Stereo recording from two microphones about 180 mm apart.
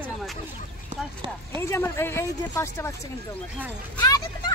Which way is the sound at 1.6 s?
15° left (ahead or behind).